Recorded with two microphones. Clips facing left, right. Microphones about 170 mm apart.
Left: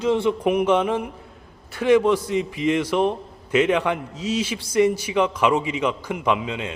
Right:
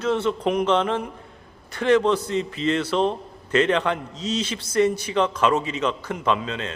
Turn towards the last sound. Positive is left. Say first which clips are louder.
# left 1 dB
turn(degrees=15)  # may be behind; listen again after turning